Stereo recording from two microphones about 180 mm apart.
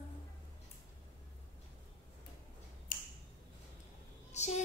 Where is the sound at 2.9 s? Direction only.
50° left (ahead or behind).